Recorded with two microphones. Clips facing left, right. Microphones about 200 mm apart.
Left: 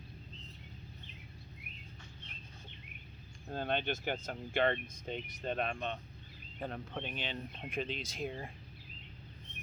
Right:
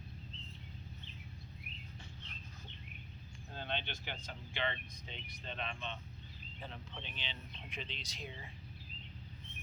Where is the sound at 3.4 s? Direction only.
50° left (ahead or behind).